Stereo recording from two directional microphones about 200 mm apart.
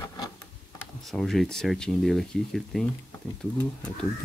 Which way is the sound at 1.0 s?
Centre (ahead or behind).